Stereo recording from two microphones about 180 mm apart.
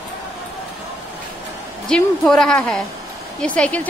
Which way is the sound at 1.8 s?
5° left (ahead or behind).